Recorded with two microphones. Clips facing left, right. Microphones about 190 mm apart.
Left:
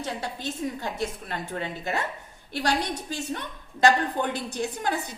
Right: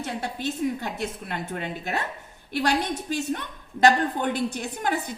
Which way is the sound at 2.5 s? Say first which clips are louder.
Right 2 dB; 55° right (ahead or behind).